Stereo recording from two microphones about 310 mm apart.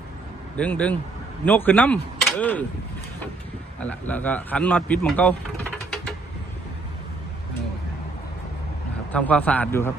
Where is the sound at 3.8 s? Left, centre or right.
Centre.